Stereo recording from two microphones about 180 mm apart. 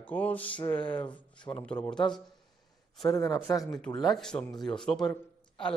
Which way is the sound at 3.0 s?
20° left (ahead or behind).